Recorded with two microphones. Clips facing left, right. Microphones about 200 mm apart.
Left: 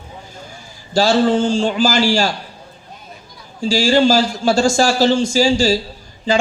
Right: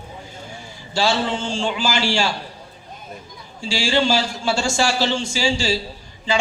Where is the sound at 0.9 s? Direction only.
40° left (ahead or behind).